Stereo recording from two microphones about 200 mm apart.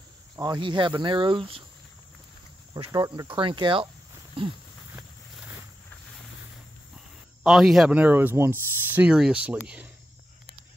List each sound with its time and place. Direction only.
0.4 s speech: 20° right (ahead or behind)
2.7 s speech: 20° right (ahead or behind)
4.9 s vehicle: 5° right (ahead or behind)
7.4 s speech: centre (ahead or behind)